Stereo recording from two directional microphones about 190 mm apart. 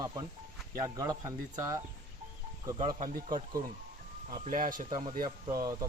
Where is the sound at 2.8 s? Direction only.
25° right (ahead or behind).